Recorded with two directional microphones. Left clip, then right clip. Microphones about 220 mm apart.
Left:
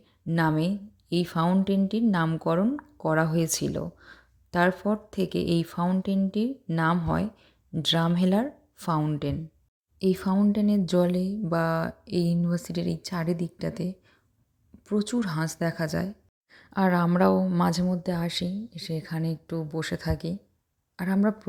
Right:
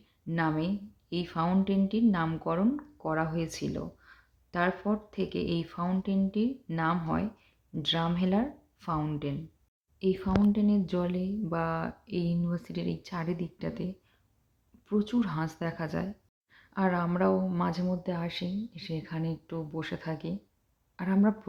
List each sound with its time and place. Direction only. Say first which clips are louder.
0.3 s speech: left 4 dB; 40° left (ahead or behind)